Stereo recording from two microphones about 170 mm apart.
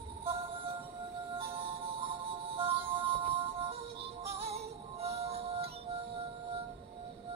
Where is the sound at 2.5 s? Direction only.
30° right (ahead or behind).